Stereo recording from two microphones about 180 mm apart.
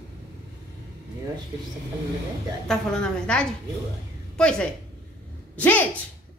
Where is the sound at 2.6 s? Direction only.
5° left (ahead or behind).